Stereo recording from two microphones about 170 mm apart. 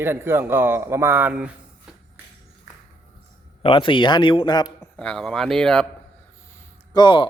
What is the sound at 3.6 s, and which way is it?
A man's voice, 30° left (ahead or behind).